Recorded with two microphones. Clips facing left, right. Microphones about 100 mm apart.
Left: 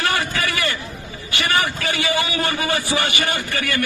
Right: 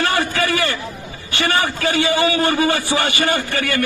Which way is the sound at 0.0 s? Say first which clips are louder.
Right 3 dB; 30° right (ahead or behind).